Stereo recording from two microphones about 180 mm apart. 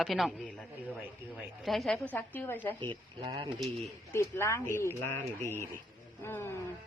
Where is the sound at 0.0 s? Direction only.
Centre (ahead or behind).